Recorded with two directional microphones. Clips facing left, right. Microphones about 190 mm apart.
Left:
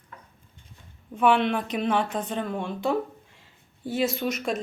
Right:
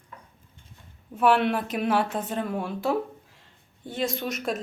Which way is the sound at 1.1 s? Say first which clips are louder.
Even; 5° right (ahead or behind).